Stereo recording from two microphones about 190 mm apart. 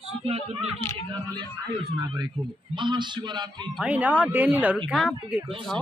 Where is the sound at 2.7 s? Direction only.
25° right (ahead or behind).